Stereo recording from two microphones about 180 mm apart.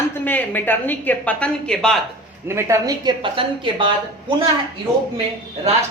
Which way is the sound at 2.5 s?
15° right (ahead or behind).